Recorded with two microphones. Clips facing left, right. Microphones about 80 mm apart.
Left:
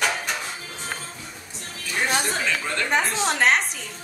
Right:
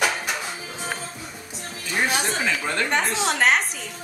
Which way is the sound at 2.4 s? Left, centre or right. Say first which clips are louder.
Right 1 dB; centre.